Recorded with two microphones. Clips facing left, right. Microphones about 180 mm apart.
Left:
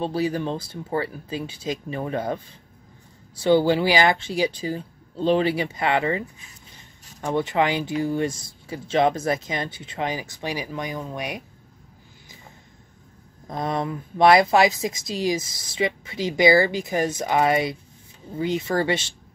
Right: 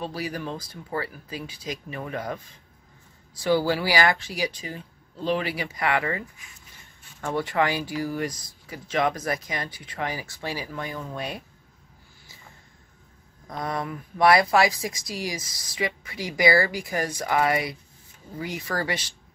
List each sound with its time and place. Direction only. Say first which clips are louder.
0.0 s a woman's voice: left 7 dB; 25° left (ahead or behind)
13.5 s a woman's voice: left 4 dB; 25° left (ahead or behind)